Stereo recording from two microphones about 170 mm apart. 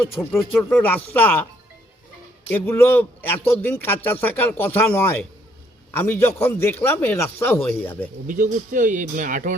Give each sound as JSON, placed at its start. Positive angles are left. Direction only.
{"t": 0.2, "sound": "a man's voice", "side_deg": 10}
{"t": 2.5, "sound": "a man's voice", "side_deg": 15}
{"t": 8.3, "sound": "speech", "side_deg": -50}